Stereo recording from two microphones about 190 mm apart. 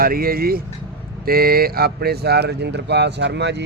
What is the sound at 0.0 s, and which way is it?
Speech, 50° right (ahead or behind).